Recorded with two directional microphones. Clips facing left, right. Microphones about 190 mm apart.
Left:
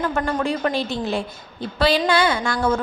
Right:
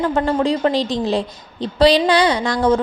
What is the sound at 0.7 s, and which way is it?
A woman's voice, 90° right.